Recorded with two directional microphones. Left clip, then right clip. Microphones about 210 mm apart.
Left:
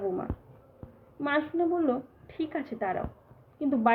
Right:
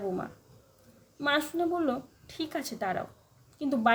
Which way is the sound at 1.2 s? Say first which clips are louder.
Even; 20° right (ahead or behind).